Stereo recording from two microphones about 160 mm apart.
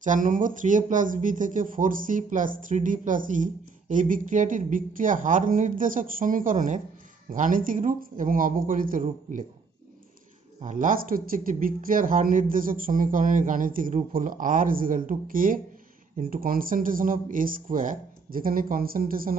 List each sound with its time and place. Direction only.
0.0 s a woman's voice: 55° right (ahead or behind)
10.6 s speech: 55° right (ahead or behind)